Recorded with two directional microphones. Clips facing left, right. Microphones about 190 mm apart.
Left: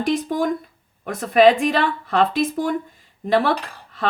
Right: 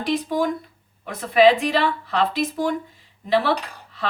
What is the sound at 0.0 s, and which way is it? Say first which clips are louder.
Speech: left 1 dB; 45° left (ahead or behind).